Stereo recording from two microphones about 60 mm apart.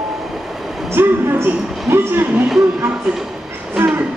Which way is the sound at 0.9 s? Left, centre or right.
Right.